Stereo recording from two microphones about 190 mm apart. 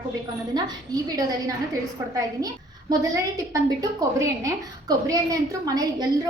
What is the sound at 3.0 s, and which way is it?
A woman's voice, 20° right (ahead or behind).